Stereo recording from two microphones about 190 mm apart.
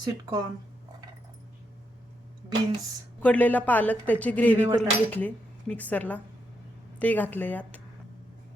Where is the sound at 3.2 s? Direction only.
10° left (ahead or behind).